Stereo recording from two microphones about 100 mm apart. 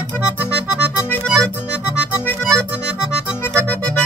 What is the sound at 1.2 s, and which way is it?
Accordion, 5° left (ahead or behind).